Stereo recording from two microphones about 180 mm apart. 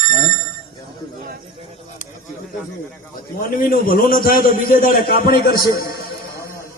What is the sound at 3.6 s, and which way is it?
A man's voice, 50° left (ahead or behind).